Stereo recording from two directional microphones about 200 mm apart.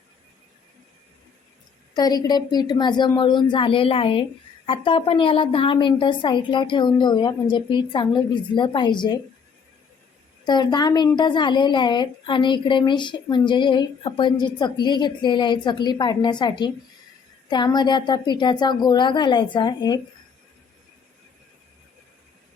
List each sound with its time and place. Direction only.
1.9 s a woman's voice: 20° left (ahead or behind)
10.4 s a woman's voice: 20° left (ahead or behind)